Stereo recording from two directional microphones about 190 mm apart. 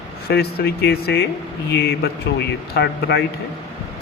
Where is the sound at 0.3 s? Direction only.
55° left (ahead or behind).